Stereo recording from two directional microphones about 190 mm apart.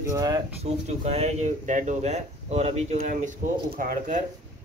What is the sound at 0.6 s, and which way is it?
Speech, 35° right (ahead or behind).